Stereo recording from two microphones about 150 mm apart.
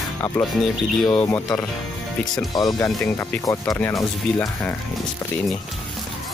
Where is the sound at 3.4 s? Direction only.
20° left (ahead or behind).